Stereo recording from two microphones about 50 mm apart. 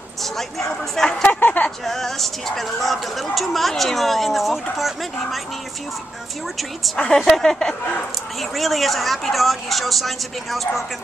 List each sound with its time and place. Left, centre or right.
0.2 s speech: centre
1.1 s speech: centre
1.4 s speech: left
1.9 s a woman's voice: centre
7.2 s a woman's voice: centre